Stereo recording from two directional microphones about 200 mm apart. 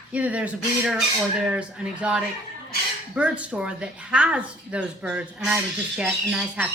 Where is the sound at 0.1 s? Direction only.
5° right (ahead or behind).